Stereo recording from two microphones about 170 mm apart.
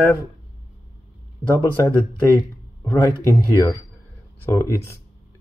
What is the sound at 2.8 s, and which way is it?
Speech, 15° left (ahead or behind).